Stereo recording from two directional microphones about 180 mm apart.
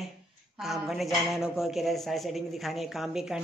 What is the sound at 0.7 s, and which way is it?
A woman's voice, centre (ahead or behind).